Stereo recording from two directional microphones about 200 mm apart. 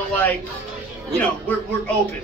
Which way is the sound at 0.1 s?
10° left (ahead or behind).